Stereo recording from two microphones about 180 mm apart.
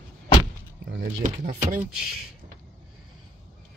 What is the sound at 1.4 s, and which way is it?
Speech, 50° right (ahead or behind).